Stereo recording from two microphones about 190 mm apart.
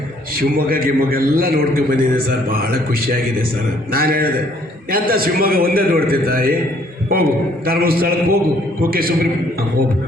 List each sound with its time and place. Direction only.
0.3 s a man's voice: 50° right (ahead or behind)